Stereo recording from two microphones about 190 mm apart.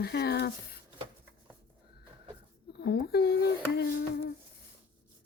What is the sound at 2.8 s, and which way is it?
Speech, 55° left (ahead or behind).